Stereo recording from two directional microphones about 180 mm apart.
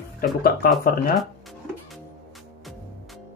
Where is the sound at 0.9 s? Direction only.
55° left (ahead or behind).